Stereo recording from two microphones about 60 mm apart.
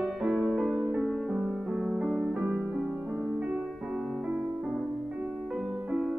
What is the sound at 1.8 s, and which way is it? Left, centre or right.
Music, centre.